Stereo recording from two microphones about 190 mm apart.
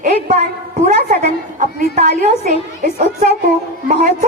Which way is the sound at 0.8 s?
40° right (ahead or behind).